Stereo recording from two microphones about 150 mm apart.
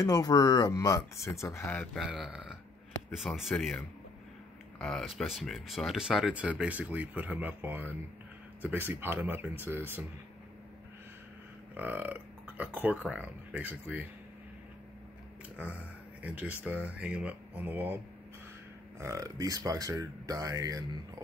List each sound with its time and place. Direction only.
0.0 s speech: 25° left (ahead or behind)
2.0 s speech: centre (ahead or behind)
4.7 s speech: 5° left (ahead or behind); by 10.0 s 15° right (ahead or behind)
11.7 s speech: 10° right (ahead or behind)
15.6 s speech: 10° right (ahead or behind)